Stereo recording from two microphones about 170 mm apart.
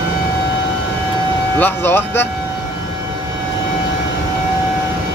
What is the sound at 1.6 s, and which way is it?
Speech, 15° left (ahead or behind).